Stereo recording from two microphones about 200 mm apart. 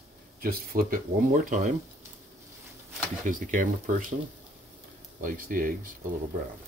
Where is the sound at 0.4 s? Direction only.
45° right (ahead or behind).